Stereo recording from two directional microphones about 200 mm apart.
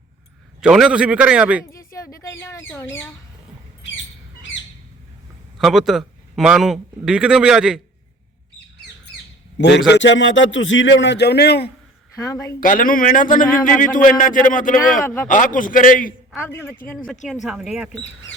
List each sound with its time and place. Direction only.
0.6 s a man's voice: 5° right (ahead or behind)
1.6 s speech: 15° left (ahead or behind)
5.5 s a man's voice: centre (ahead or behind)
9.6 s a man's voice: 60° left (ahead or behind)
12.1 s speech: 15° left (ahead or behind)
12.5 s speech: 40° left (ahead or behind)
15.0 s speech: 10° left (ahead or behind)
15.3 s speech: 40° left (ahead or behind)
17.4 s a man's voice: centre (ahead or behind)